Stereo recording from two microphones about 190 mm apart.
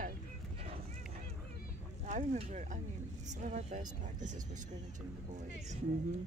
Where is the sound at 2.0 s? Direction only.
40° right (ahead or behind).